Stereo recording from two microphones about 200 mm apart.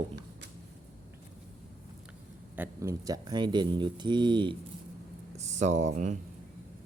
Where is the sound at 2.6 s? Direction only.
15° right (ahead or behind).